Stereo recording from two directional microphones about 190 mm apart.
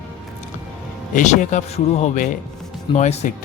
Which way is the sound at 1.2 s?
40° left (ahead or behind).